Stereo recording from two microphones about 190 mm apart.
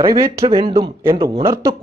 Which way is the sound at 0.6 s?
30° right (ahead or behind).